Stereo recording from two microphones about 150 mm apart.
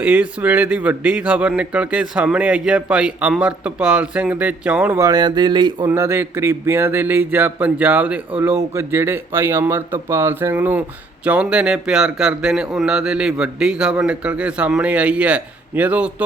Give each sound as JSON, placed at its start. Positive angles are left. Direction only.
{"t": 0.0, "sound": "a man's voice", "side_deg": -10}
{"t": 4.9, "sound": "a sound", "side_deg": -25}
{"t": 5.9, "sound": "a man's voice", "side_deg": -15}